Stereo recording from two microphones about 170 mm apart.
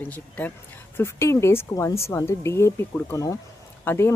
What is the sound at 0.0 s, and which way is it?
Speech, 10° left (ahead or behind).